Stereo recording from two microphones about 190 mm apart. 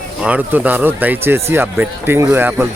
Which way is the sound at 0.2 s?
5° right (ahead or behind).